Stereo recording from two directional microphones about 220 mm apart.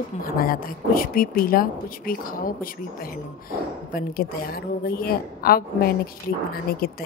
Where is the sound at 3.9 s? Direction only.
40° left (ahead or behind).